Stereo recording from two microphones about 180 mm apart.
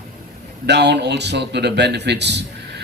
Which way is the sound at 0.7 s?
70° right (ahead or behind).